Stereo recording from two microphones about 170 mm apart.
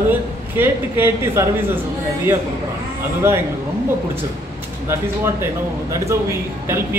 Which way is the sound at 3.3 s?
15° right (ahead or behind).